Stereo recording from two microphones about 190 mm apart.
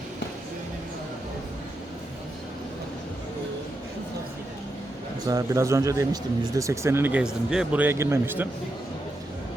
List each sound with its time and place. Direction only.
5.3 s speech: 15° right (ahead or behind)